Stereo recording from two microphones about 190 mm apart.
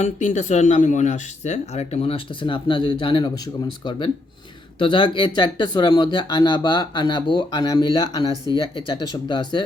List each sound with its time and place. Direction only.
0.0 s speech: 40° left (ahead or behind)